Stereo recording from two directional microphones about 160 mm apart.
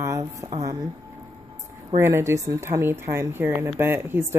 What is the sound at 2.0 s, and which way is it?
Speech, 15° right (ahead or behind).